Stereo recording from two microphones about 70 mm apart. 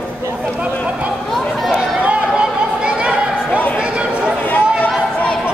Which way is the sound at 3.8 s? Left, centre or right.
Centre.